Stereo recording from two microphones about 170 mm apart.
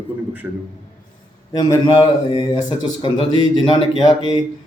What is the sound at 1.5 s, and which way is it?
A man's voice, 25° left (ahead or behind).